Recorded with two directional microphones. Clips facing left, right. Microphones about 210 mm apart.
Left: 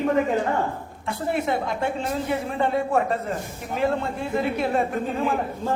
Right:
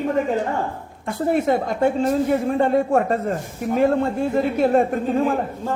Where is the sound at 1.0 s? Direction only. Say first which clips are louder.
Right 6 dB; 45° right (ahead or behind).